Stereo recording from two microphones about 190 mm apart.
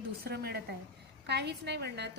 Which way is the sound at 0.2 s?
55° right (ahead or behind).